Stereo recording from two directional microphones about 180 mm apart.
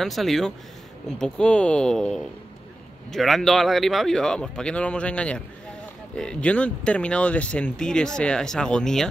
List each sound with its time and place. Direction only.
0.0 s speech: centre (ahead or behind)